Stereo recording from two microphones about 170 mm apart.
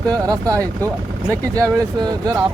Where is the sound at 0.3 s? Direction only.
20° right (ahead or behind).